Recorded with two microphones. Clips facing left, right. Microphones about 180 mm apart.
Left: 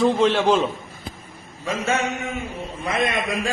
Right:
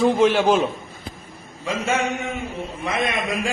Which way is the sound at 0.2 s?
5° right (ahead or behind).